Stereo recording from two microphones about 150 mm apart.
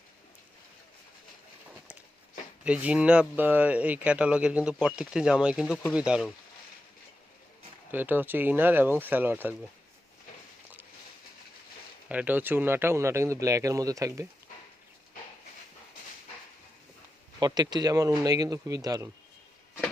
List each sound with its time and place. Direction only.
2.6 s speech: 10° right (ahead or behind)
7.9 s speech: 10° right (ahead or behind)
12.0 s speech: 10° right (ahead or behind)
17.4 s speech: 25° right (ahead or behind)